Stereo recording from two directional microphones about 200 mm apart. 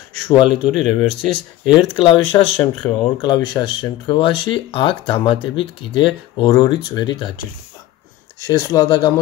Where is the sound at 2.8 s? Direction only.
15° left (ahead or behind).